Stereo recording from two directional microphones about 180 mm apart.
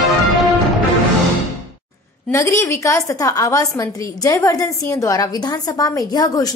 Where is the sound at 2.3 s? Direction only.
15° left (ahead or behind).